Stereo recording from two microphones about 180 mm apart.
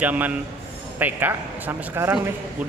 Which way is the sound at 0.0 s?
10° right (ahead or behind).